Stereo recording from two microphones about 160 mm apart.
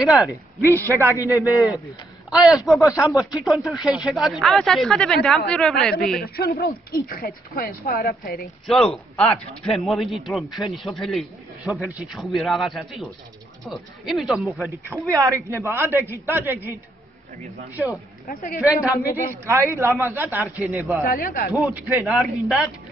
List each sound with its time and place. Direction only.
0.0 s speech: centre (ahead or behind)
0.3 s speech: 15° left (ahead or behind)
0.8 s a man's voice: 15° right (ahead or behind)
1.1 s a man's voice: 20° left (ahead or behind)
2.3 s speech: 5° right (ahead or behind)
6.2 s speech: 75° left (ahead or behind)
8.6 s speech: centre (ahead or behind)
14.9 s a man's voice: 20° right (ahead or behind)
18.2 s a woman's voice: 60° left (ahead or behind)
19.4 s a man's voice: 15° right (ahead or behind)
21.0 s speech: 65° left (ahead or behind)
21.6 s speech: 5° right (ahead or behind)